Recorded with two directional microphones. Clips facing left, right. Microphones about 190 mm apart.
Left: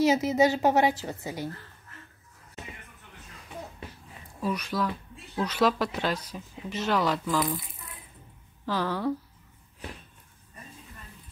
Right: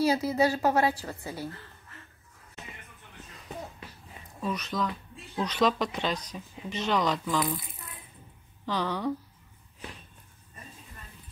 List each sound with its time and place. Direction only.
0.0 s a woman's voice: 20° left (ahead or behind)
4.4 s speech: 10° left (ahead or behind)
8.6 s speech: 5° left (ahead or behind)